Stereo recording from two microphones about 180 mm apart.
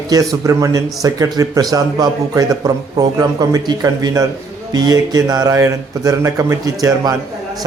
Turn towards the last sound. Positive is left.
turn(degrees=-20)  # may be behind; listen again after turning